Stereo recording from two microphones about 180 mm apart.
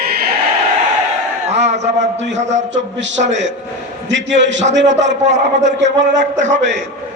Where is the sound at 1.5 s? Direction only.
40° right (ahead or behind).